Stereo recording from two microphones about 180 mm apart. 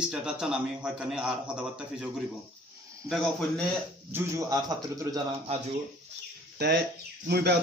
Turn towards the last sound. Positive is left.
turn(degrees=-65)  # may be behind; listen again after turning